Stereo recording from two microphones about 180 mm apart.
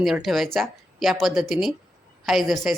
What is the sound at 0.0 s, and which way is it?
Speech, centre (ahead or behind).